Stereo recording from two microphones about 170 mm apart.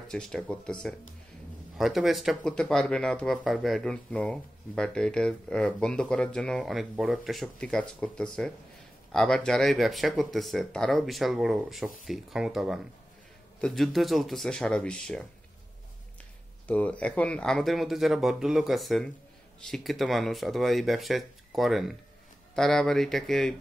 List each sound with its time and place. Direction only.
0.1 s speech: 5° left (ahead or behind)
1.8 s speech: centre (ahead or behind)
16.6 s speech: 10° left (ahead or behind)